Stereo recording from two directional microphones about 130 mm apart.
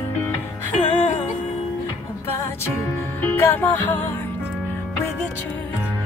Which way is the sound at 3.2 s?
15° left (ahead or behind).